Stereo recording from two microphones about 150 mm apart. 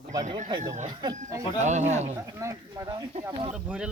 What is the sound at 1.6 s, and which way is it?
Speech, 50° right (ahead or behind).